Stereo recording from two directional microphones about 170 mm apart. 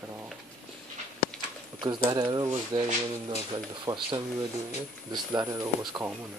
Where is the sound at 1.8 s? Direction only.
25° right (ahead or behind).